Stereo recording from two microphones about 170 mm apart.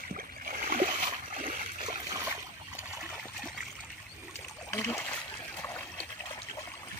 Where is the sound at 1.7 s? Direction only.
35° right (ahead or behind).